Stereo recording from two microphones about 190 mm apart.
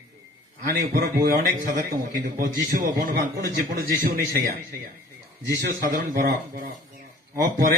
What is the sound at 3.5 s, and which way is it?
Speech, 70° right (ahead or behind).